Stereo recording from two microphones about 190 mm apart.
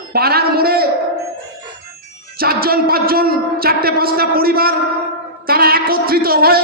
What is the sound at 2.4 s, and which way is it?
A man's voice, 50° right (ahead or behind).